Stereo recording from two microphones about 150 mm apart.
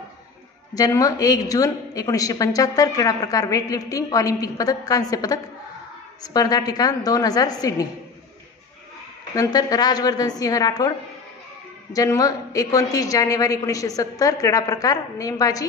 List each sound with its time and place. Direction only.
0.7 s a woman's voice: 25° left (ahead or behind)
9.3 s a woman's voice: 25° left (ahead or behind)
11.9 s a woman's voice: 25° left (ahead or behind)